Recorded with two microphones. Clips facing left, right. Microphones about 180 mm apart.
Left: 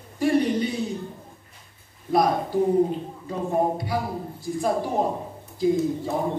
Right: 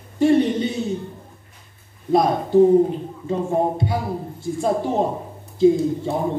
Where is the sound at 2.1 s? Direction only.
25° right (ahead or behind).